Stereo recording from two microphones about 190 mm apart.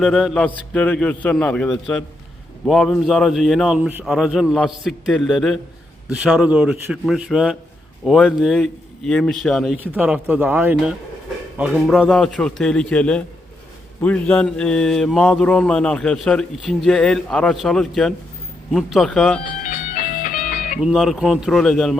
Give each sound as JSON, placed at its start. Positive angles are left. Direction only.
{"t": 0.0, "sound": "mantra", "side_deg": 0}
{"t": 9.7, "sound": "speech", "side_deg": -10}
{"t": 11.5, "sound": "mantra", "side_deg": -5}
{"t": 19.6, "sound": "music", "side_deg": 45}
{"t": 20.8, "sound": "mantra", "side_deg": 0}